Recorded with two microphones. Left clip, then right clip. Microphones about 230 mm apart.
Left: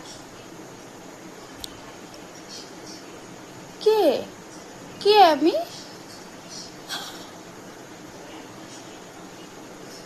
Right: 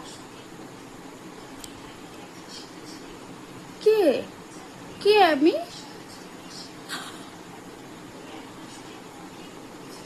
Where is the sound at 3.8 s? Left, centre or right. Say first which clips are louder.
Left 1 dB; centre.